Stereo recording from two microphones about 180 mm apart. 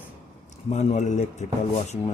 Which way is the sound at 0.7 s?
40° left (ahead or behind).